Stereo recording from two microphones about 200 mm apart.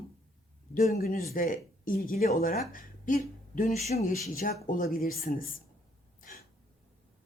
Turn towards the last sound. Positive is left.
turn(degrees=45)  # may be behind; listen again after turning